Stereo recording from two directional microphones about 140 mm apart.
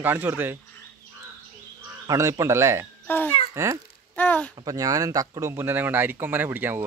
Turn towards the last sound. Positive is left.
turn(degrees=-15)  # may be behind; listen again after turning